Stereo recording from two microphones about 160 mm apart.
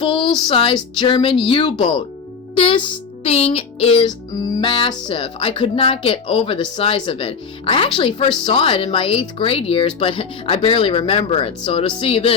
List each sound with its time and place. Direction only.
0.0 s speech: 30° left (ahead or behind)